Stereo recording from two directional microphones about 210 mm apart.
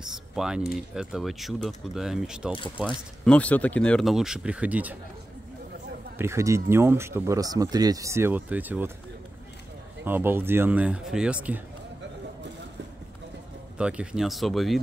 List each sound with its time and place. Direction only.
0.0 s speech: 5° right (ahead or behind)
6.1 s speech: 15° right (ahead or behind)
10.0 s speech: 10° right (ahead or behind)
13.7 s speech: 5° right (ahead or behind)